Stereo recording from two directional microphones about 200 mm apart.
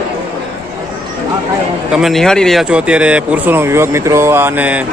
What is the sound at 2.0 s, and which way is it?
Speech, centre (ahead or behind).